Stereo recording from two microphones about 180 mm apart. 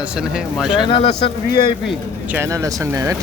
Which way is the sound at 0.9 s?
30° left (ahead or behind).